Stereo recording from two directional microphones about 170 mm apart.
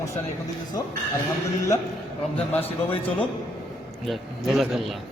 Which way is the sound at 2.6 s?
35° left (ahead or behind).